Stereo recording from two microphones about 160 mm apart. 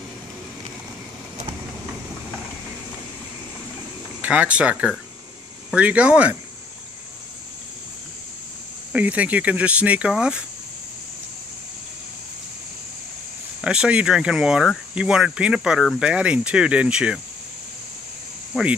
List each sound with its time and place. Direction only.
4.2 s speech: 10° right (ahead or behind)
8.9 s speech: 10° right (ahead or behind)
13.6 s speech: 5° right (ahead or behind)
18.5 s speech: 5° right (ahead or behind)